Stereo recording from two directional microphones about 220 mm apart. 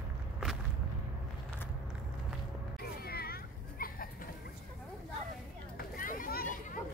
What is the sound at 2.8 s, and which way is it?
Children playing, 45° left (ahead or behind).